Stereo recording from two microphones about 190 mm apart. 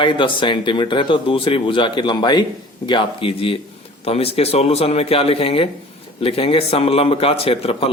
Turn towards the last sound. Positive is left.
turn(degrees=30)  # may be behind; listen again after turning